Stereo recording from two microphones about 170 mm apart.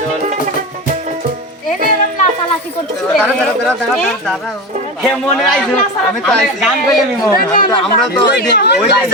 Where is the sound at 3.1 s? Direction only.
Centre (ahead or behind).